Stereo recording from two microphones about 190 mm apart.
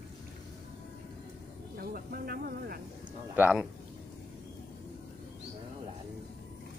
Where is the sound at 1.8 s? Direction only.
55° right (ahead or behind).